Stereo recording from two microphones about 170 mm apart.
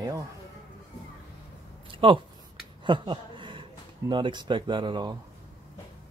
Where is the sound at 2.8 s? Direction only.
30° right (ahead or behind).